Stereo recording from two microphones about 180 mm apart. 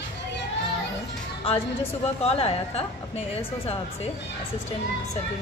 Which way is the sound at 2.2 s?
35° left (ahead or behind).